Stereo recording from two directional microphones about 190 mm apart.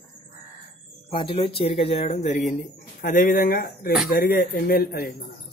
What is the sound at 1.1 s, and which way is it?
A man's voice, 25° left (ahead or behind).